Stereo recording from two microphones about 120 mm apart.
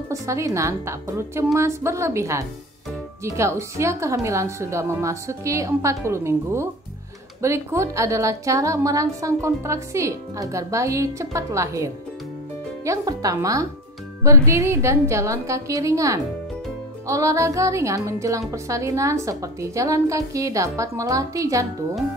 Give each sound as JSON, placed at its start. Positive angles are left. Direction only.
{"t": 0.1, "sound": "a woman's voice", "side_deg": -25}